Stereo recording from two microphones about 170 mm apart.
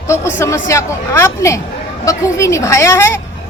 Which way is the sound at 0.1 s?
15° left (ahead or behind).